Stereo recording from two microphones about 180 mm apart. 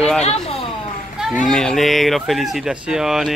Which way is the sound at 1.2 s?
Centre (ahead or behind).